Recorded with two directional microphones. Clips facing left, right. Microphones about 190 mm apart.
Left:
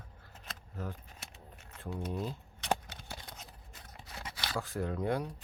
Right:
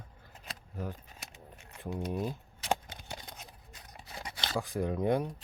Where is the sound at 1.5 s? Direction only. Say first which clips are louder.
Right 3 dB; 15° right (ahead or behind).